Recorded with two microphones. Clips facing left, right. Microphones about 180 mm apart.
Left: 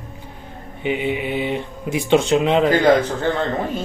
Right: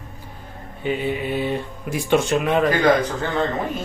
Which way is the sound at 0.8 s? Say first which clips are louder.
Left 2 dB; 15° left (ahead or behind).